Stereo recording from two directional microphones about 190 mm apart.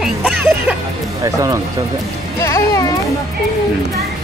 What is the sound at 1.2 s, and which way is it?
Speech, 15° right (ahead or behind).